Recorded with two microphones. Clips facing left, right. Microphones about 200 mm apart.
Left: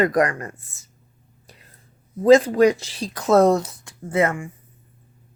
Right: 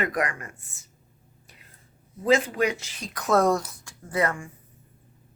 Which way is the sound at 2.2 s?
40° left (ahead or behind).